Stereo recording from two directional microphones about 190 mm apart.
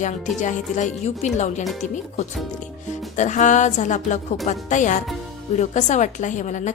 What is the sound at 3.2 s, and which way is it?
A woman's voice, 40° left (ahead or behind).